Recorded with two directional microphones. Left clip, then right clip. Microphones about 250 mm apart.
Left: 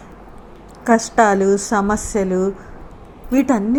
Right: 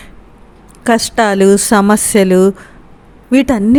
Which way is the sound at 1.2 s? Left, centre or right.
Right.